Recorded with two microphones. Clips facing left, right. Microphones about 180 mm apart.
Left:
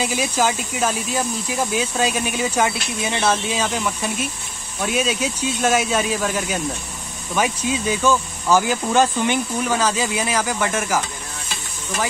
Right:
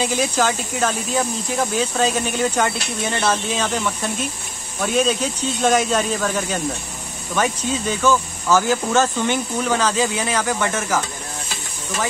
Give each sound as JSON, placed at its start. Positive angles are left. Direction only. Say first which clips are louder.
{"t": 0.0, "sound": "speech", "louder": "right 1 dB", "side_deg": 10}